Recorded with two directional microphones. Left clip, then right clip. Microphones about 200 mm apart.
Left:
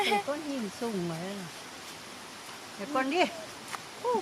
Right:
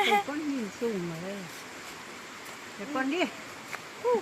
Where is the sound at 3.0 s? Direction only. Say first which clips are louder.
Left 2 dB; 35° left (ahead or behind).